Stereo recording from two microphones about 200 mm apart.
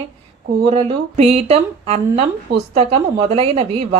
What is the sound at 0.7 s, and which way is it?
A woman's voice, 30° right (ahead or behind).